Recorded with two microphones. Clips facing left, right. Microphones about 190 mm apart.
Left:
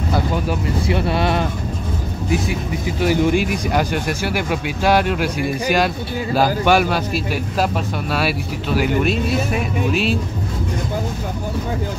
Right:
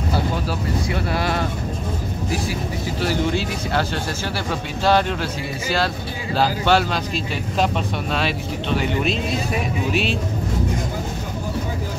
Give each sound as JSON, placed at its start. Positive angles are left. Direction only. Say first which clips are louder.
{"t": 0.8, "sound": "a sound", "louder": "left 6 dB", "side_deg": 20}
{"t": 3.0, "sound": "speech", "louder": "left 6 dB", "side_deg": 15}
{"t": 8.1, "sound": "speech", "louder": "left 4 dB", "side_deg": 5}